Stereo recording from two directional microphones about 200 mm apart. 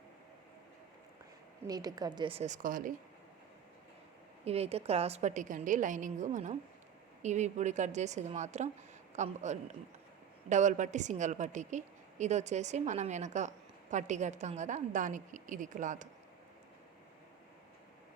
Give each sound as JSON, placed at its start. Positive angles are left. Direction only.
{"t": 1.6, "sound": "a woman's voice", "side_deg": -20}
{"t": 4.4, "sound": "a woman's voice", "side_deg": -30}